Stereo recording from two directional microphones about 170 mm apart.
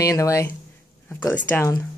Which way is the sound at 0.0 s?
20° left (ahead or behind).